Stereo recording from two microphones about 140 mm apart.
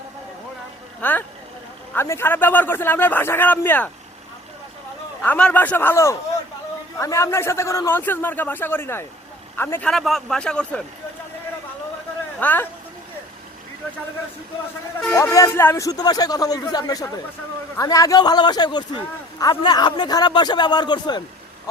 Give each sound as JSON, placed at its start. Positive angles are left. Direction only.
{"t": 1.0, "sound": "a man's voice", "side_deg": 10}
{"t": 5.2, "sound": "a man's voice", "side_deg": 10}
{"t": 9.9, "sound": "speech", "side_deg": 0}
{"t": 12.4, "sound": "speech", "side_deg": 10}
{"t": 15.1, "sound": "a man's voice", "side_deg": 20}